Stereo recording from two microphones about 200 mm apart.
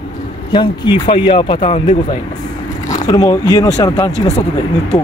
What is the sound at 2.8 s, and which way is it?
Speech, 20° left (ahead or behind).